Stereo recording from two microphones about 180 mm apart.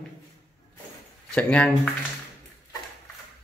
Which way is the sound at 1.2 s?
5° left (ahead or behind).